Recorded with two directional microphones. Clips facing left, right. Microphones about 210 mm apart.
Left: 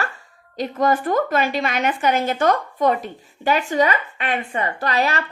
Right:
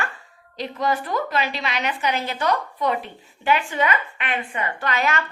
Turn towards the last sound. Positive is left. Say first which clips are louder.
# left 2 dB
turn(degrees=35)  # may be behind; listen again after turning